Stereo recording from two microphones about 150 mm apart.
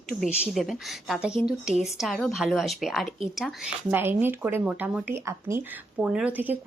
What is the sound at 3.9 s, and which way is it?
A woman's voice, 15° right (ahead or behind).